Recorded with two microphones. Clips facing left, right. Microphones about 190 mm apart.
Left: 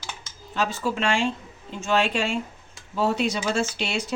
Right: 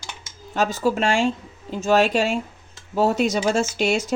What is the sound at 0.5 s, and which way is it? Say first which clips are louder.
Speech: right 5 dB; 45° right (ahead or behind).